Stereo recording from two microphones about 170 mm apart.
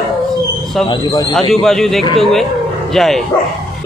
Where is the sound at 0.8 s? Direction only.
25° left (ahead or behind).